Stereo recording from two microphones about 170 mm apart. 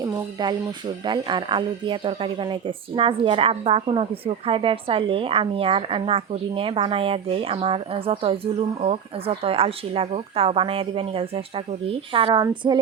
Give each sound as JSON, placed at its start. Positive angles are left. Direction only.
{"t": 0.0, "sound": "speech", "side_deg": -25}